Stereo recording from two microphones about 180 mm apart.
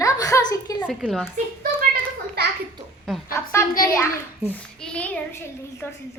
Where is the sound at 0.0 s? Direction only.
20° left (ahead or behind).